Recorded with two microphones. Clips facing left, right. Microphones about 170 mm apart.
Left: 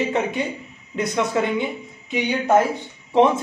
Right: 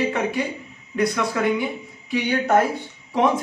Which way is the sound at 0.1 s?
20° left (ahead or behind).